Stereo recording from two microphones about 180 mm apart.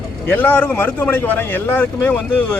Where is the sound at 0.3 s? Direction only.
10° left (ahead or behind).